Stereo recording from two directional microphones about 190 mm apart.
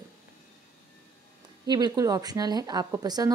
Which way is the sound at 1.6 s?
20° right (ahead or behind).